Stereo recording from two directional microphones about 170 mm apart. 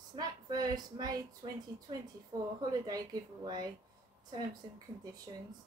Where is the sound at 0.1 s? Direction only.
25° right (ahead or behind).